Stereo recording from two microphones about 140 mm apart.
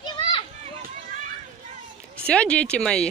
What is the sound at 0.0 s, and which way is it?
Children playing, 40° left (ahead or behind).